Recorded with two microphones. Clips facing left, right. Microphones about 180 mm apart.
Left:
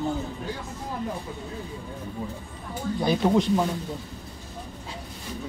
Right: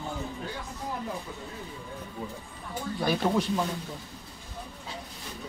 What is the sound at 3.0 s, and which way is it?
Speech, 20° left (ahead or behind).